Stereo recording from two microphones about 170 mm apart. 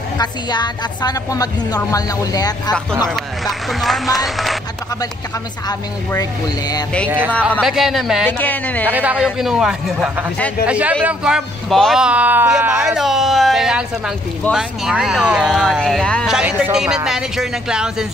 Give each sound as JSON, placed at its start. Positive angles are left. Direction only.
{"t": 0.2, "sound": "a woman's voice", "side_deg": 25}
{"t": 3.1, "sound": "speech", "side_deg": 0}
{"t": 7.1, "sound": "speech", "side_deg": -10}
{"t": 8.3, "sound": "speech", "side_deg": 10}
{"t": 8.8, "sound": "speech", "side_deg": -10}